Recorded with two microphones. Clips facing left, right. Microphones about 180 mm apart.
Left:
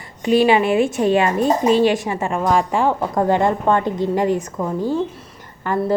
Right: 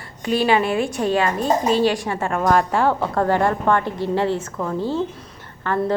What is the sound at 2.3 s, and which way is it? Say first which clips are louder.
A woman's voice: even; 10° left (ahead or behind).